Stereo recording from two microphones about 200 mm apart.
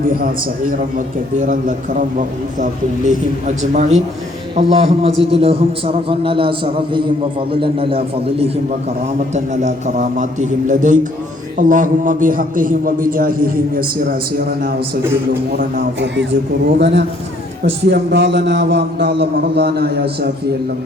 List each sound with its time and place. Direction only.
0.0 s a man's voice: 45° right (ahead or behind)